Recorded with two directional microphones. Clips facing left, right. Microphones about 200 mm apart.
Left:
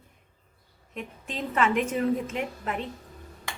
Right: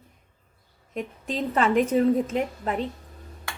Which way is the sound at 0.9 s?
35° right (ahead or behind).